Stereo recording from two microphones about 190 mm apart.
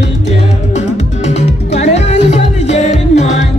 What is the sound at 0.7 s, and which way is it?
Music, 35° left (ahead or behind).